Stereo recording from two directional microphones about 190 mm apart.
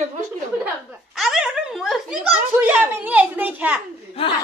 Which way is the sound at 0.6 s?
5° right (ahead or behind).